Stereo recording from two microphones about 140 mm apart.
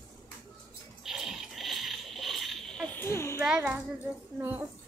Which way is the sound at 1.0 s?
Centre (ahead or behind).